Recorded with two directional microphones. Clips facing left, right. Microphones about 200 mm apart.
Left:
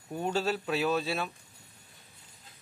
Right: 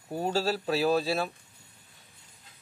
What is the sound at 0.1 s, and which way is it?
A man's voice, 35° right (ahead or behind).